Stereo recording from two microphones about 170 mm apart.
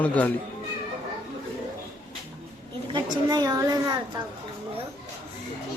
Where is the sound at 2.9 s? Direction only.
25° right (ahead or behind).